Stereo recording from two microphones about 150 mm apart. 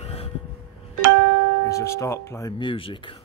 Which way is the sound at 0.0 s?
45° left (ahead or behind).